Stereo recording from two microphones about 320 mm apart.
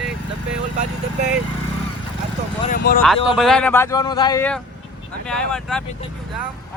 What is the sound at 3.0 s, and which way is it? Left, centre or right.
Speech, centre.